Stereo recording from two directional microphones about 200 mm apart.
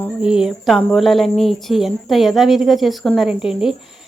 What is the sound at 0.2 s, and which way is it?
Speech, 5° right (ahead or behind).